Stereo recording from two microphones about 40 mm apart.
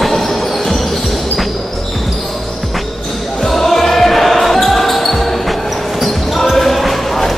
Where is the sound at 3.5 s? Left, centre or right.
Centre.